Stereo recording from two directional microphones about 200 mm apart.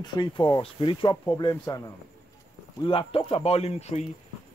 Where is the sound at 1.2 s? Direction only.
15° left (ahead or behind).